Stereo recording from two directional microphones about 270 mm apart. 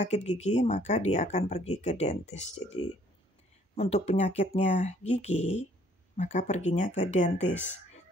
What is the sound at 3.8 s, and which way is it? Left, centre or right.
Speech, left.